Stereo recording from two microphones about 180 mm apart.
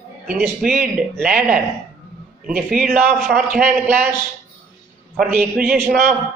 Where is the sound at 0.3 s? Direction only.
Centre (ahead or behind).